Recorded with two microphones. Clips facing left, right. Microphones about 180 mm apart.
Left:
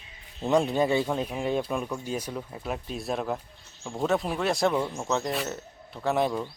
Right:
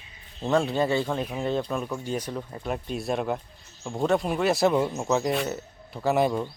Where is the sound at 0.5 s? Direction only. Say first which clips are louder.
Even; 15° left (ahead or behind).